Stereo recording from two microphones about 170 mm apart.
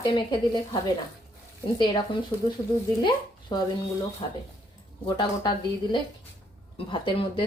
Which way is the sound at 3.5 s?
25° left (ahead or behind).